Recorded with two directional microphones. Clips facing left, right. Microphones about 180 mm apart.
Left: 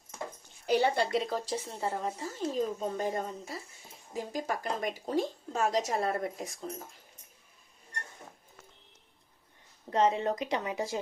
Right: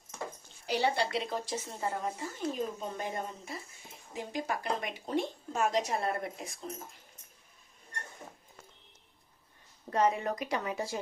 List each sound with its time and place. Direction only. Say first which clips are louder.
0.7 s speech: left 3 dB; 50° left (ahead or behind)
1.8 s speech: right 1 dB; 30° left (ahead or behind)
9.9 s a woman's voice: left 2 dB; 25° left (ahead or behind)